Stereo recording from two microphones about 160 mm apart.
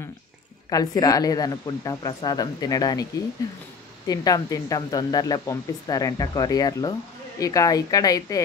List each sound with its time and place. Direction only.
0.7 s speech: 25° left (ahead or behind)
4.1 s speech: 25° left (ahead or behind)